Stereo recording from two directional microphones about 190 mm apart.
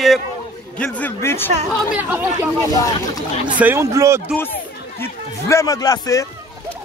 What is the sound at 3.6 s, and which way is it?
Speech, 10° right (ahead or behind).